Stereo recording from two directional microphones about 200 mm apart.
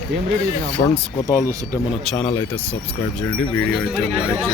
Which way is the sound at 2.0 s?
5° left (ahead or behind).